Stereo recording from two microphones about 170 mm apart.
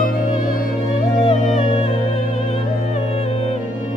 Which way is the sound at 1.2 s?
35° left (ahead or behind).